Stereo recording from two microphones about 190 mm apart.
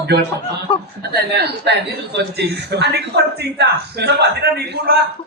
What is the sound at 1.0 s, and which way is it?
A woman's voice, 60° right (ahead or behind).